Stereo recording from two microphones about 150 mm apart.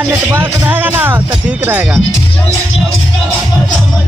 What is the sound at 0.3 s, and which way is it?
Speech, 10° right (ahead or behind).